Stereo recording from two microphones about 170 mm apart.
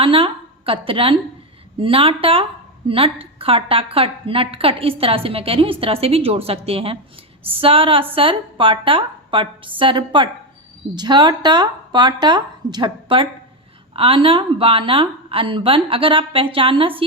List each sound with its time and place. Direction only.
0.0 s a woman's voice: 30° right (ahead or behind)